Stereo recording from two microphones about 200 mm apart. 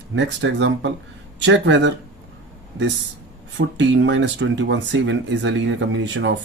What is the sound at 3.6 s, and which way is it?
Speech, 65° right (ahead or behind).